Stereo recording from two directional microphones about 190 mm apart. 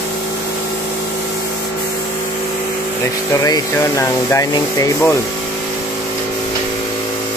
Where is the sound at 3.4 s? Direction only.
15° left (ahead or behind).